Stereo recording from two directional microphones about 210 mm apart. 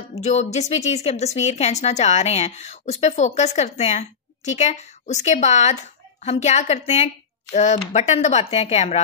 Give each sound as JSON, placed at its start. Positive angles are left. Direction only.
{"t": 0.1, "sound": "a woman's voice", "side_deg": 30}